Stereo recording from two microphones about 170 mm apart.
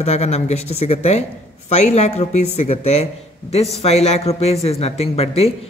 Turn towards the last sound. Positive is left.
turn(degrees=35)  # may be behind; listen again after turning